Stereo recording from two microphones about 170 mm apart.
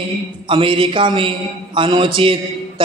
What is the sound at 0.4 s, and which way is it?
A man's voice, 30° right (ahead or behind).